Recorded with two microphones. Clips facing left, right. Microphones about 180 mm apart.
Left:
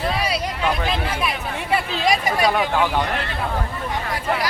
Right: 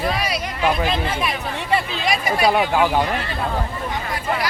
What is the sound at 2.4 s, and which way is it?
Speech, 10° right (ahead or behind).